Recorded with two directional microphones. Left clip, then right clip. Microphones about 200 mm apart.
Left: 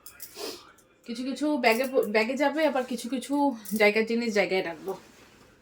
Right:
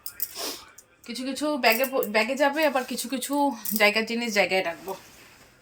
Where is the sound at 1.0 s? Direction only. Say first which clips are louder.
Right 1 dB; 10° right (ahead or behind); by 4.7 s 10° left (ahead or behind).